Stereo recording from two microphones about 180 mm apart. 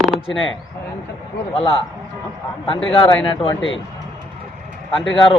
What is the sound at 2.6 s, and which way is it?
Speech, 30° left (ahead or behind).